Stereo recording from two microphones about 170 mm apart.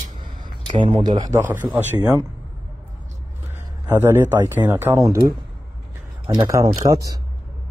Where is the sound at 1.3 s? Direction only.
10° right (ahead or behind).